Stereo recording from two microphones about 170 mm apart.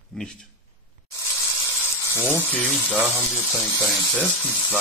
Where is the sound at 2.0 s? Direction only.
20° left (ahead or behind).